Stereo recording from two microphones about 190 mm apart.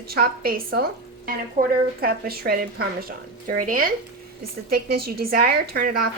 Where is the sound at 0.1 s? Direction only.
50° right (ahead or behind).